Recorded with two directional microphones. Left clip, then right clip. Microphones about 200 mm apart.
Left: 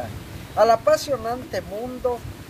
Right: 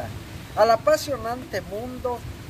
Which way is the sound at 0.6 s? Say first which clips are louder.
Left 1 dB; 10° left (ahead or behind).